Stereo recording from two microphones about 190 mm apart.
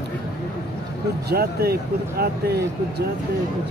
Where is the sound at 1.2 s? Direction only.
55° right (ahead or behind).